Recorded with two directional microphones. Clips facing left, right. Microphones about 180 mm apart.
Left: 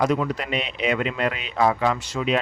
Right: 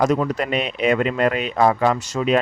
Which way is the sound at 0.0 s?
45° right (ahead or behind).